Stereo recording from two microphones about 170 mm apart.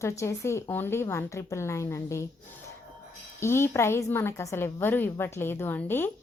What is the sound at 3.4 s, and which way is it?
A woman's voice, 15° left (ahead or behind).